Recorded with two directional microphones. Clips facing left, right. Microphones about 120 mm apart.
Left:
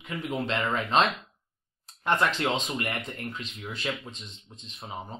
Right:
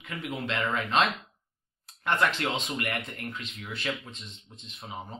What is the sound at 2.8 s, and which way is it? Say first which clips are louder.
Speech: left 1 dB; 25° left (ahead or behind).